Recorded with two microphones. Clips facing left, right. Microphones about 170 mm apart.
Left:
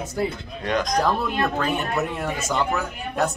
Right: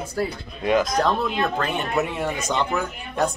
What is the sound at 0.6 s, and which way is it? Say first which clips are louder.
Speech: right 4 dB; 5° right (ahead or behind).